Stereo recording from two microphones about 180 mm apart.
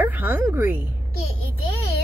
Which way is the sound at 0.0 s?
10° right (ahead or behind).